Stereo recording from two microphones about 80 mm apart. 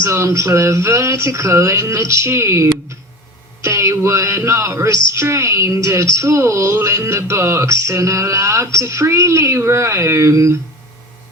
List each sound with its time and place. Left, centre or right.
0.0 s a woman's voice: right